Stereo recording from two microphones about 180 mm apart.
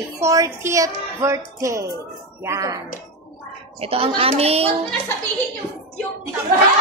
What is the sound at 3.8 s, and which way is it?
Speech, 35° right (ahead or behind).